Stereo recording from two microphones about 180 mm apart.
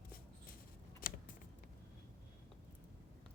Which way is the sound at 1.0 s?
55° left (ahead or behind).